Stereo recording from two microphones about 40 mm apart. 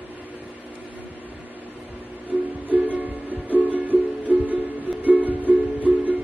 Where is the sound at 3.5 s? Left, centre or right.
Right.